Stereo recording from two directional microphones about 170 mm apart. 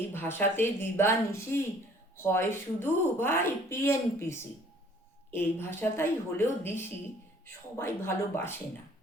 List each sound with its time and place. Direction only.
0.1 s speech: 15° left (ahead or behind)